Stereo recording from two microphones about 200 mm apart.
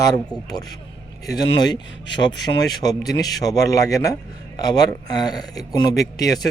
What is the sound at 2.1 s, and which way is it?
A man's voice, 20° left (ahead or behind).